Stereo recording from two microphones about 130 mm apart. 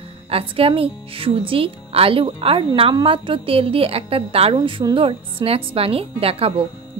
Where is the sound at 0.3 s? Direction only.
45° right (ahead or behind).